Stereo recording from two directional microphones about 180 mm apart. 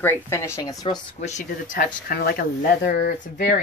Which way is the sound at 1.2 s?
45° left (ahead or behind).